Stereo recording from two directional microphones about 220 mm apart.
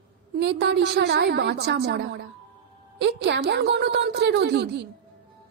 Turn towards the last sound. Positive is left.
turn(degrees=-50)  # may be behind; listen again after turning